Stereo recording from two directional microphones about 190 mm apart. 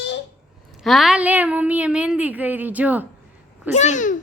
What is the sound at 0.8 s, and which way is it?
A woman's voice, centre (ahead or behind).